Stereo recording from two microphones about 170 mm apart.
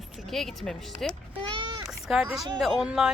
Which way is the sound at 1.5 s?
30° right (ahead or behind).